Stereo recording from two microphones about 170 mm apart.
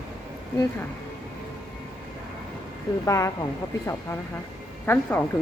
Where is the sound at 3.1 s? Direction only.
20° left (ahead or behind).